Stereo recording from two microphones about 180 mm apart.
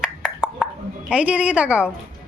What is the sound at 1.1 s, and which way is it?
Speech, 5° right (ahead or behind).